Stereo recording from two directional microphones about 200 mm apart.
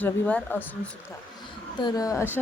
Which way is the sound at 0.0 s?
5° left (ahead or behind).